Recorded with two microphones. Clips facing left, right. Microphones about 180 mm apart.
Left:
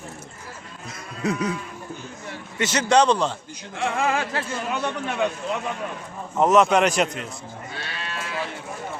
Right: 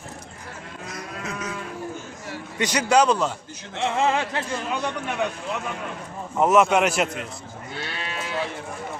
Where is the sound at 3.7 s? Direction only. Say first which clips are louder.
Right 1 dB; 25° right (ahead or behind).